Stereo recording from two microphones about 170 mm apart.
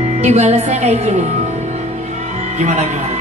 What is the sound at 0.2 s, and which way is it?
Speech, 40° right (ahead or behind).